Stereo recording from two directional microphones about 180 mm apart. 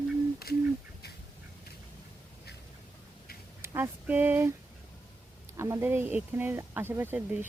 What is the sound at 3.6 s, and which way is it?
Speech, 10° right (ahead or behind).